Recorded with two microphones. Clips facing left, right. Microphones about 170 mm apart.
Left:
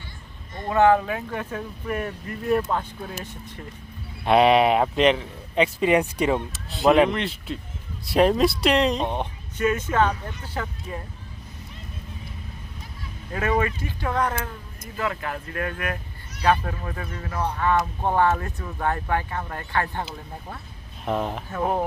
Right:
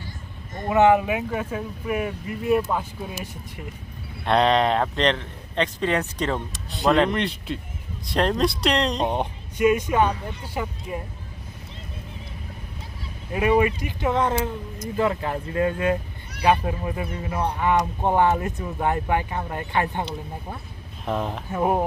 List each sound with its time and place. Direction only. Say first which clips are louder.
0.7 s speech: right 1 dB; 15° right (ahead or behind)
4.3 s speech: left 2 dB; 10° left (ahead or behind)
9.0 s speech: right 3 dB; 15° right (ahead or behind)
13.3 s speech: right 4 dB; 15° right (ahead or behind)
21.0 s speech: left 1 dB; centre (ahead or behind)
21.5 s speech: right 3 dB; 15° right (ahead or behind)